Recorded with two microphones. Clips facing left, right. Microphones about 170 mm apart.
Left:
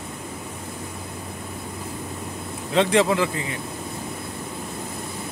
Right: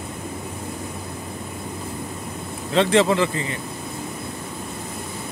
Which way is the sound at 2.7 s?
10° left (ahead or behind).